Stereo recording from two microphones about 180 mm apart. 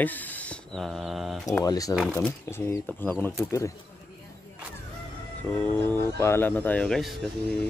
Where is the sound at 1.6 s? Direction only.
20° left (ahead or behind).